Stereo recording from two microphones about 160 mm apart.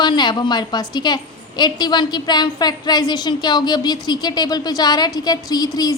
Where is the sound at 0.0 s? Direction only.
25° left (ahead or behind).